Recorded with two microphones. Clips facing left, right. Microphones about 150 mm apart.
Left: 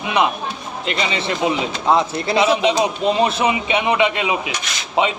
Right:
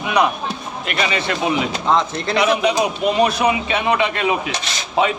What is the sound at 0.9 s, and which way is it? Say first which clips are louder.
Speech: right 1 dB; 25° left (ahead or behind).